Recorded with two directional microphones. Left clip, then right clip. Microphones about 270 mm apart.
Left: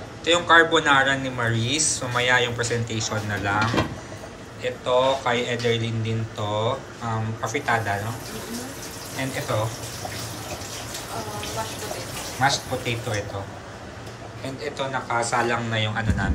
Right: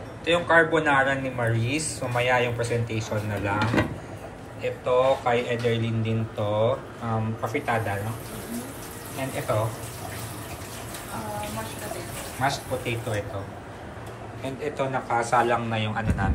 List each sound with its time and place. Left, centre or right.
0.2 s speech: centre
4.6 s speech: centre
12.4 s speech: centre
14.6 s speech: centre